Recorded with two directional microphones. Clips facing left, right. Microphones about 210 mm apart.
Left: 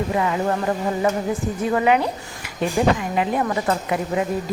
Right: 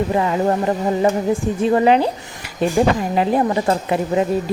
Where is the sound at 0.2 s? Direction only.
30° right (ahead or behind).